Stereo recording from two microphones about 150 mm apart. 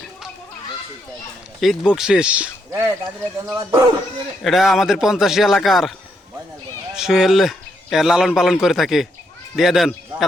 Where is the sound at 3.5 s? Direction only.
25° right (ahead or behind).